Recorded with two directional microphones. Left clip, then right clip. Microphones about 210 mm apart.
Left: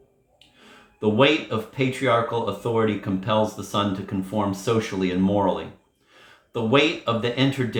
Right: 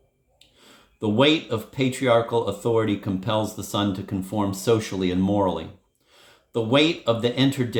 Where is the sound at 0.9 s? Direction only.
55° right (ahead or behind).